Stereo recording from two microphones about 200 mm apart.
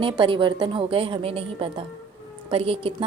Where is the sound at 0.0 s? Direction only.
25° right (ahead or behind).